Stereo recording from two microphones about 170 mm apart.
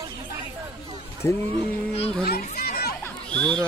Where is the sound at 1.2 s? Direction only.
15° left (ahead or behind).